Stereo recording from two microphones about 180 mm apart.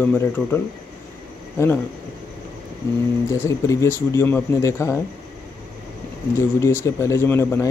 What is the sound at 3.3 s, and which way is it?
Speech, 15° left (ahead or behind).